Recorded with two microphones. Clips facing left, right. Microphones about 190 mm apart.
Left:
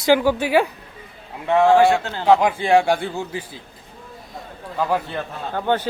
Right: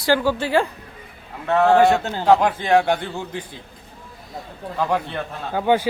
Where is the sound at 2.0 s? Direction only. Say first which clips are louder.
Right 2 dB; 15° right (ahead or behind).